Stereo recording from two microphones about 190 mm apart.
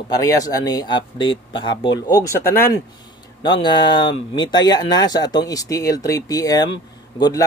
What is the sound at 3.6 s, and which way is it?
A man's voice, 25° left (ahead or behind).